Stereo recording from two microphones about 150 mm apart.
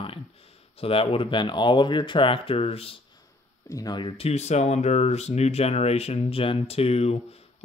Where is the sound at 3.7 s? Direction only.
25° left (ahead or behind).